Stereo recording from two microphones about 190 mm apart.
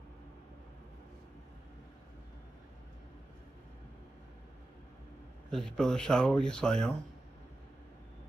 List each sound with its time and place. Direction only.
5.5 s speech: 5° left (ahead or behind)